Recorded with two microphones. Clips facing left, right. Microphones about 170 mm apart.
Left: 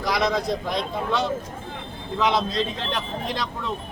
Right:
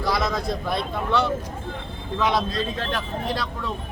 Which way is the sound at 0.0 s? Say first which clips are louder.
Left 1 dB; 20° left (ahead or behind).